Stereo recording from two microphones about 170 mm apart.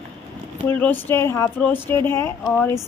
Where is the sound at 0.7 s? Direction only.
10° left (ahead or behind).